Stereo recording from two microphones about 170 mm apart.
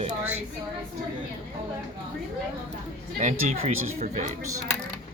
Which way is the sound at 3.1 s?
45° right (ahead or behind).